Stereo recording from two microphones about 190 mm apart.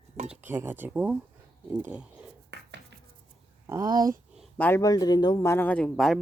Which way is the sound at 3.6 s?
20° right (ahead or behind).